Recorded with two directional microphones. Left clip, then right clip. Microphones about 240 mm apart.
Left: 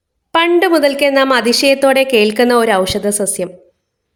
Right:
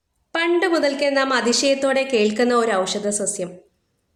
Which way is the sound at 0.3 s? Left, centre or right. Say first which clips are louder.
Left 8 dB; left.